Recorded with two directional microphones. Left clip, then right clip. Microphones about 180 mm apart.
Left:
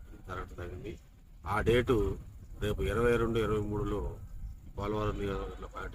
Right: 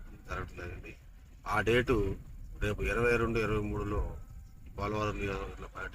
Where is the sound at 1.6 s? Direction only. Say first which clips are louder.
Left 2 dB; 15° left (ahead or behind).